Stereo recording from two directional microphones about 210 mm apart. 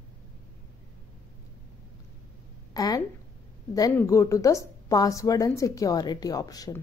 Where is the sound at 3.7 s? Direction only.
15° left (ahead or behind).